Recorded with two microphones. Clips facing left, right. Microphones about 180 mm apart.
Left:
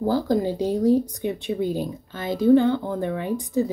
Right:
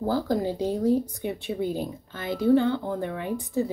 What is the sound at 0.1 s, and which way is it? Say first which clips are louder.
Speech: left 3 dB; 15° left (ahead or behind).